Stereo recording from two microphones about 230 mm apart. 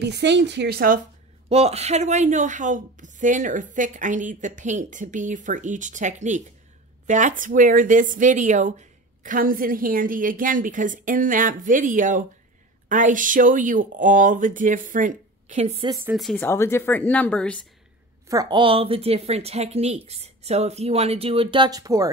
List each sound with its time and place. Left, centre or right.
0.0 s a woman's voice: right
1.5 s speech: right
16.0 s a woman's voice: centre
18.3 s speech: centre